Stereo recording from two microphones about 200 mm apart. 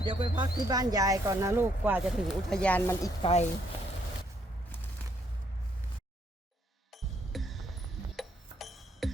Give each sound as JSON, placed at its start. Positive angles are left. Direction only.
{"t": 0.0, "sound": "speech", "side_deg": -25}
{"t": 2.5, "sound": "speech", "side_deg": 5}
{"t": 3.2, "sound": "speech", "side_deg": 30}
{"t": 6.9, "sound": "music", "side_deg": 0}